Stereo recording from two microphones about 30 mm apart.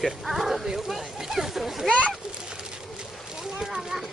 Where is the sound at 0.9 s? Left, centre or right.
Centre.